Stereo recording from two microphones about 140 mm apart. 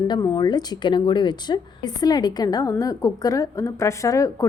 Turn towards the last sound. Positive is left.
turn(degrees=25)  # may be behind; listen again after turning